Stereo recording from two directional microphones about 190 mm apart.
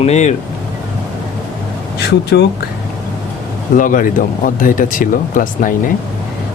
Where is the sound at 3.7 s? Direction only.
45° left (ahead or behind).